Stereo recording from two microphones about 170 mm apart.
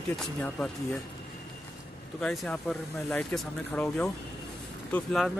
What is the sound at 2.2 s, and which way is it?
Speech, 5° left (ahead or behind).